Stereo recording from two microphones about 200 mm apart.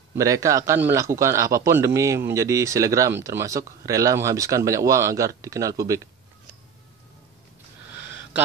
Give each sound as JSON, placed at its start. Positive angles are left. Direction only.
{"t": 0.1, "sound": "speech", "side_deg": -15}